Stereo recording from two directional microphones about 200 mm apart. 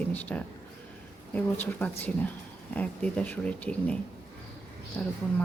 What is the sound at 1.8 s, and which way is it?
Speech, 10° left (ahead or behind).